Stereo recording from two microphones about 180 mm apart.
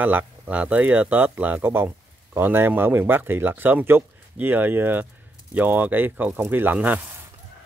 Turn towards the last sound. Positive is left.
turn(degrees=-10)  # may be behind; listen again after turning